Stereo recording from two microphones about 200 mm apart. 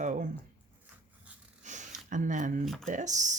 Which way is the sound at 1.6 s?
35° right (ahead or behind).